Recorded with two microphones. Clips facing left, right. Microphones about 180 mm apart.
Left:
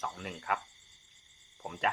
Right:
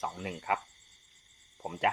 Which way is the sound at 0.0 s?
20° right (ahead or behind).